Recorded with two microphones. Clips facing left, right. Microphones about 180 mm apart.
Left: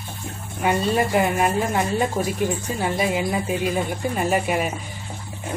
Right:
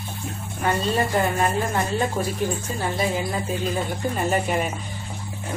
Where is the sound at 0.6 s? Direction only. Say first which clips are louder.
Left 2 dB; 10° left (ahead or behind).